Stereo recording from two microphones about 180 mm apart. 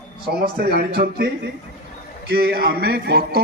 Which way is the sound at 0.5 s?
60° right (ahead or behind).